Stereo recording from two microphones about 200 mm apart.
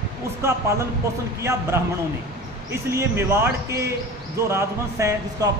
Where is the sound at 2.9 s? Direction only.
15° right (ahead or behind).